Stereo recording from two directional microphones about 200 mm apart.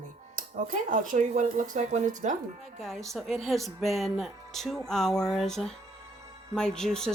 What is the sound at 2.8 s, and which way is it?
Speech, centre (ahead or behind).